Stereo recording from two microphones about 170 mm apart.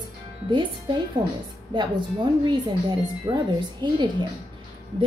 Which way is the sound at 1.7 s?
25° right (ahead or behind).